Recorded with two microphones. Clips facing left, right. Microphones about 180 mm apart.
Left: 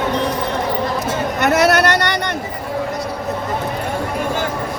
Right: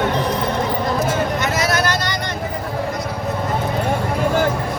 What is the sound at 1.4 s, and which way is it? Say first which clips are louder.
Vehicle: left 6 dB; 65° left (ahead or behind).